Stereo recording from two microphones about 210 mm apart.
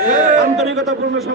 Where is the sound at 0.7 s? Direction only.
Centre (ahead or behind).